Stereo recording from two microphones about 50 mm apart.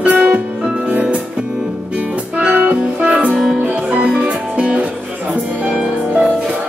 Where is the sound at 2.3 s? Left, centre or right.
Right.